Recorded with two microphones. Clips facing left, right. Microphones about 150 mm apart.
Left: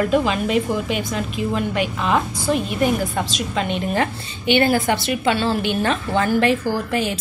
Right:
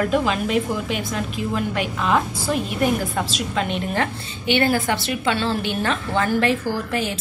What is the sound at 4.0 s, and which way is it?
A woman's voice, 20° left (ahead or behind).